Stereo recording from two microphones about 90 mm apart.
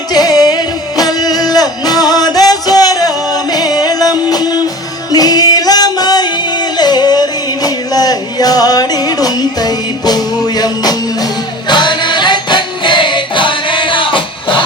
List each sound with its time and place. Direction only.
0.1 s music: 45° left (ahead or behind)
11.7 s music: 60° left (ahead or behind)